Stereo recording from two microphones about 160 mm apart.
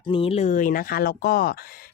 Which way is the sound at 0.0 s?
35° left (ahead or behind).